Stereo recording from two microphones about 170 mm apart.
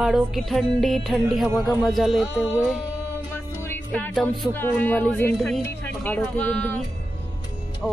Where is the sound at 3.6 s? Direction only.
10° left (ahead or behind).